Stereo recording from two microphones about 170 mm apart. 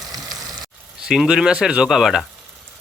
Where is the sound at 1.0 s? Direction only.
5° right (ahead or behind).